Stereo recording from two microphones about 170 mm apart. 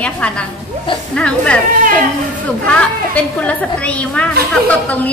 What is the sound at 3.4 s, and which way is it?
A woman's voice, 10° left (ahead or behind).